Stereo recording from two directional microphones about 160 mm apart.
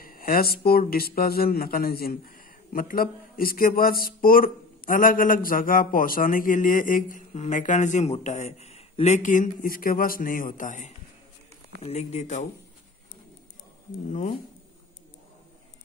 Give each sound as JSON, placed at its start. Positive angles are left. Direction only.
{"t": 0.0, "sound": "speech", "side_deg": 65}
{"t": 11.8, "sound": "speech", "side_deg": 45}